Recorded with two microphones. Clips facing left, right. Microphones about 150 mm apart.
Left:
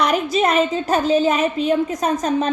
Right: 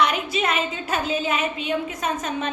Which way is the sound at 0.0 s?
40° left (ahead or behind).